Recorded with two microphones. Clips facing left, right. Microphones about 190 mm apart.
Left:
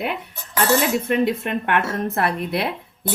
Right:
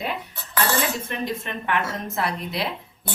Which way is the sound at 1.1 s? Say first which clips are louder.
Left 9 dB; 60° left (ahead or behind).